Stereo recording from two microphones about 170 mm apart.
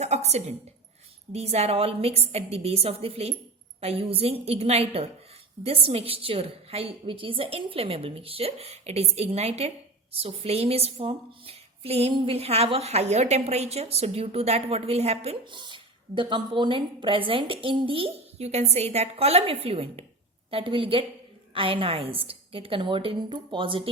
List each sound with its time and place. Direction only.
0.0 s a woman's voice: 40° right (ahead or behind)